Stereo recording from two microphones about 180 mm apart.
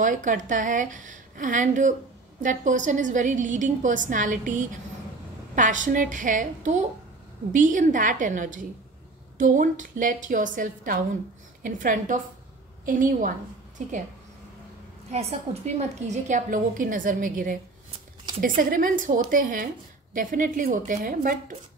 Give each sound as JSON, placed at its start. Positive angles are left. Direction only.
{"t": 0.0, "sound": "a woman's voice", "side_deg": -45}
{"t": 15.0, "sound": "a woman's voice", "side_deg": -40}
{"t": 18.6, "sound": "a woman's voice", "side_deg": -50}